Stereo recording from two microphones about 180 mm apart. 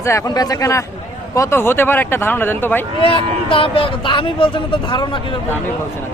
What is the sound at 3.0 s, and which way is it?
Speech, 30° left (ahead or behind).